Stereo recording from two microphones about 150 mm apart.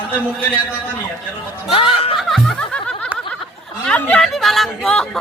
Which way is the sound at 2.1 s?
Centre (ahead or behind).